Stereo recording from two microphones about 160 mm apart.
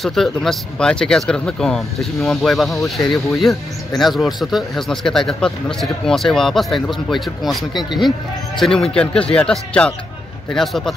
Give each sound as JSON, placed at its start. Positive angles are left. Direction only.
{"t": 0.0, "sound": "speech", "side_deg": 0}